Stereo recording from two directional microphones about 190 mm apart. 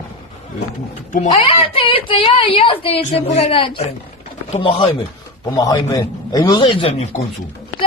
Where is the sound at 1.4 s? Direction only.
25° left (ahead or behind).